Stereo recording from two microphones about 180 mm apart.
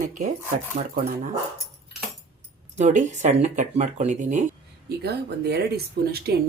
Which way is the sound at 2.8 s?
45° right (ahead or behind).